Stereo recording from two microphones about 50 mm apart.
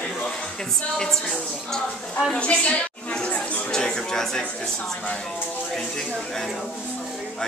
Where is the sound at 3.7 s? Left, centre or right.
Centre.